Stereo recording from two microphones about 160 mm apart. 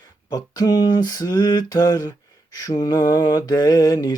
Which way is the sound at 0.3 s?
25° left (ahead or behind).